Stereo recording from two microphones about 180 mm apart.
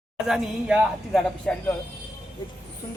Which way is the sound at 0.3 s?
Centre (ahead or behind).